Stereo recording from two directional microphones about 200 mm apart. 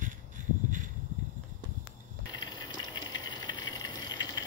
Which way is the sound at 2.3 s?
20° left (ahead or behind).